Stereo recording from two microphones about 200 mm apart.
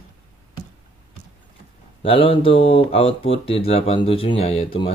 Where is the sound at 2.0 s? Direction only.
25° left (ahead or behind).